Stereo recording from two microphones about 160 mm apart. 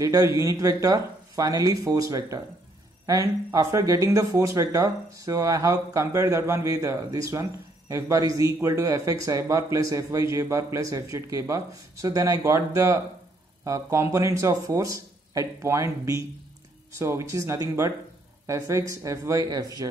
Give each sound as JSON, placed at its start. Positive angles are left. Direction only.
{"t": 0.0, "sound": "speech", "side_deg": -20}